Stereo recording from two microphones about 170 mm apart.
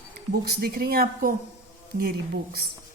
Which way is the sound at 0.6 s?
65° right (ahead or behind).